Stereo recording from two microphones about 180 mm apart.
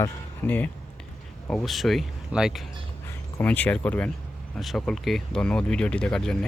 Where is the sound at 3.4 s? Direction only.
10° left (ahead or behind).